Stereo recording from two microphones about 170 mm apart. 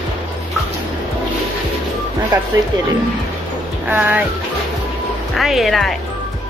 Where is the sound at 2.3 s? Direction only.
25° right (ahead or behind).